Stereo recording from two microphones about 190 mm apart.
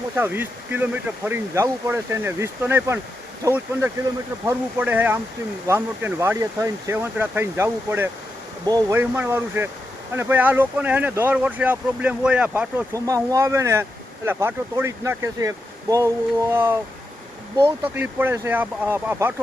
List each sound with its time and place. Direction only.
0.2 s speech: 10° right (ahead or behind)